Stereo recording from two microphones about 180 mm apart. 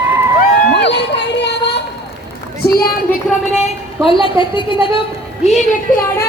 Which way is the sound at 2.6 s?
60° left (ahead or behind).